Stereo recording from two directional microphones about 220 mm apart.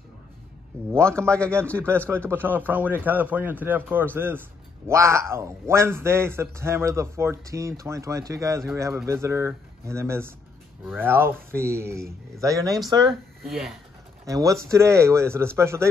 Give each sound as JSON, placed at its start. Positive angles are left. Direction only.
{"t": 0.8, "sound": "a man's voice", "side_deg": -10}
{"t": 1.2, "sound": "a man's voice", "side_deg": 5}
{"t": 2.0, "sound": "a man's voice", "side_deg": -10}
{"t": 13.1, "sound": "speech", "side_deg": 0}
{"t": 14.2, "sound": "a man's voice", "side_deg": -15}